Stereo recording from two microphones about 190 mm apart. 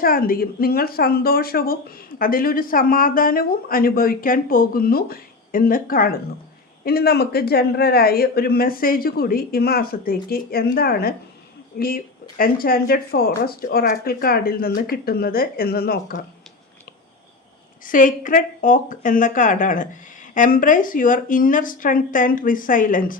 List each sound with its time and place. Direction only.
0.0 s a woman's voice: 50° left (ahead or behind)
17.8 s a woman's voice: 45° left (ahead or behind)